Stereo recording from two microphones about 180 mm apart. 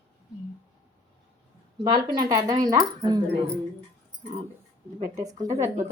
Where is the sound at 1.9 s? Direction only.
20° right (ahead or behind).